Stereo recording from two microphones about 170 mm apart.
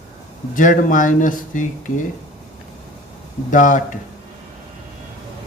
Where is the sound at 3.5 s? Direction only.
50° left (ahead or behind).